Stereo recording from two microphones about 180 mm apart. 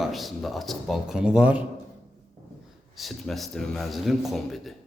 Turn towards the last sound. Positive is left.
turn(degrees=0)  # may be behind; listen again after turning